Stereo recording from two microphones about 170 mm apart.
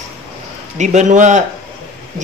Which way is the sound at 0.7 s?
45° right (ahead or behind).